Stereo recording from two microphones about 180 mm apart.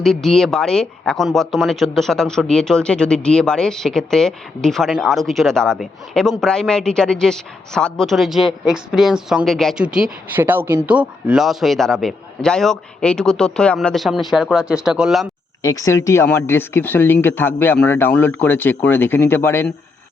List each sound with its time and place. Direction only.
0.0 s a woman's voice: centre (ahead or behind)
15.6 s speech: 20° left (ahead or behind)